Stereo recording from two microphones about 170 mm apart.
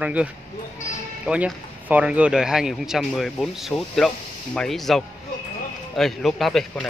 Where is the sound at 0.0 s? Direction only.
10° right (ahead or behind).